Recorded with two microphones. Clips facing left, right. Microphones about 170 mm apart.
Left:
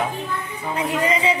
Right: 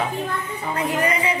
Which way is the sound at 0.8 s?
25° left (ahead or behind).